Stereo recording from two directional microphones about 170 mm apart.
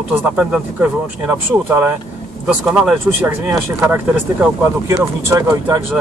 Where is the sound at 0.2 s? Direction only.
10° right (ahead or behind).